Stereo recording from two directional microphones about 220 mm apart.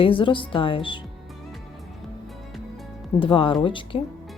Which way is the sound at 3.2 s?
25° left (ahead or behind).